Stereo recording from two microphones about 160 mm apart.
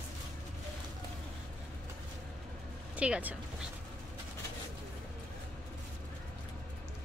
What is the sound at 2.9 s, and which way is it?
Speech, 10° right (ahead or behind).